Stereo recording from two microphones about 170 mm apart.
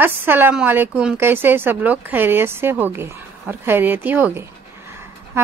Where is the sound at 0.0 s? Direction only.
10° right (ahead or behind).